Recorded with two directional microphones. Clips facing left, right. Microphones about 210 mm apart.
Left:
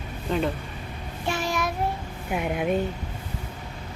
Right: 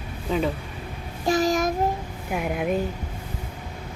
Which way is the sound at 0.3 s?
Centre (ahead or behind).